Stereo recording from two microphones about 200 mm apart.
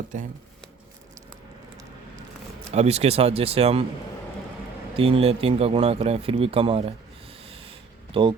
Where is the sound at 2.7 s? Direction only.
30° right (ahead or behind).